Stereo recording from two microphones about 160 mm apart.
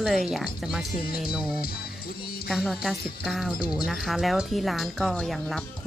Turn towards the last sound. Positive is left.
turn(degrees=0)  # may be behind; listen again after turning